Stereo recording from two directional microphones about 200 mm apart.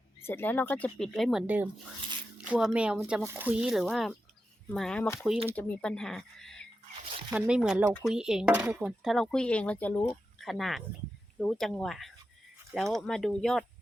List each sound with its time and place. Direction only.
0.2 s speech: 10° left (ahead or behind)